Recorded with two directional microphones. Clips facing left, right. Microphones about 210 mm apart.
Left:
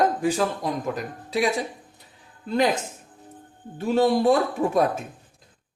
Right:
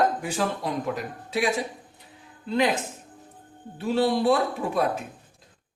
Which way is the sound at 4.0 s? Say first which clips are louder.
Left 3 dB; 45° left (ahead or behind).